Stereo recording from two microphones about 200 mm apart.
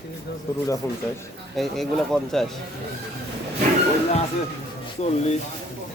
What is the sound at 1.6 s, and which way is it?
Speech, centre (ahead or behind).